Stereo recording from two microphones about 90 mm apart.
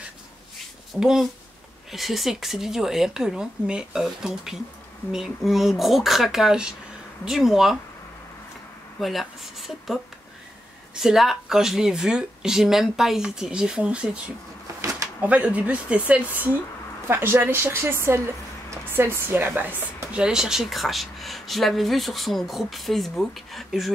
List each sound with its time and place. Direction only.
0.9 s speech: 5° right (ahead or behind)
9.0 s speech: centre (ahead or behind)
11.0 s speech: 5° right (ahead or behind)
14.8 s drawer open or close: 35° right (ahead or behind)
15.1 s a woman's voice: 15° right (ahead or behind)
20.2 s speech: 10° right (ahead or behind)